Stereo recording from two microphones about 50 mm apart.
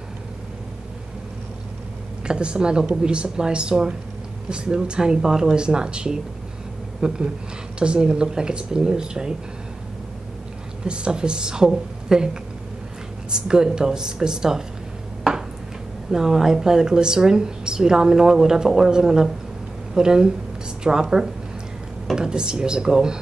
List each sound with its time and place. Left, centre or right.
2.2 s speech: centre
10.8 s speech: centre
13.3 s speech: centre
16.1 s speech: centre